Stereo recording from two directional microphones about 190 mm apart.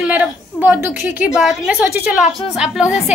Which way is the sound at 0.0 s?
10° right (ahead or behind).